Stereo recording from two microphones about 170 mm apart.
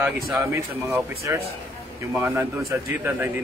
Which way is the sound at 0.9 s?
15° right (ahead or behind).